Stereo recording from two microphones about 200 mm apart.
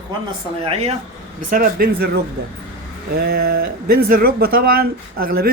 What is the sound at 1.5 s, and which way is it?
Speech, 45° right (ahead or behind).